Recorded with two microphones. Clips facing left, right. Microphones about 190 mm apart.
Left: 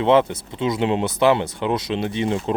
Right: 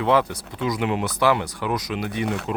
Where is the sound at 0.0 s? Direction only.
25° left (ahead or behind).